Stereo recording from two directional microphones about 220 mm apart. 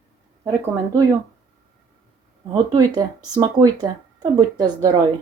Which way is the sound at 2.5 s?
20° right (ahead or behind).